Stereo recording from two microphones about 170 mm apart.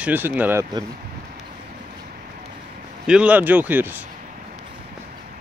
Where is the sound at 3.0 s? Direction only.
5° right (ahead or behind).